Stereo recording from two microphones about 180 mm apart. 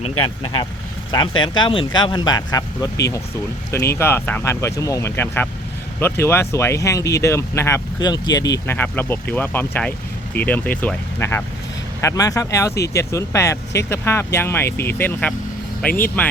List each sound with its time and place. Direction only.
1.4 s speech: 25° left (ahead or behind); by 16.3 s 10° left (ahead or behind)